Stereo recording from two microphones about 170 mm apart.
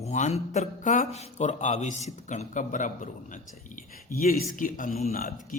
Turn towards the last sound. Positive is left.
turn(degrees=55)  # may be behind; listen again after turning